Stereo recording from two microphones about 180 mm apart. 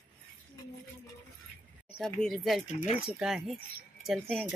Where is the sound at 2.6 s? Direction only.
40° left (ahead or behind).